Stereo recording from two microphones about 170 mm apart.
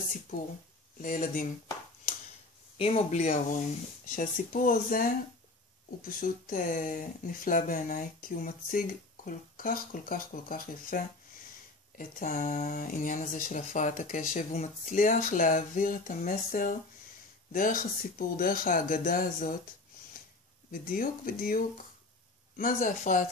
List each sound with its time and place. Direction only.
1.0 s speech: 55° left (ahead or behind)
2.8 s speech: 40° left (ahead or behind); by 11.0 s 55° left (ahead or behind)
12.0 s speech: 50° left (ahead or behind)
20.9 s speech: 55° left (ahead or behind)